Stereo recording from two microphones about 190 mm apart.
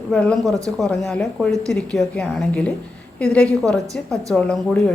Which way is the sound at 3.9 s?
15° right (ahead or behind).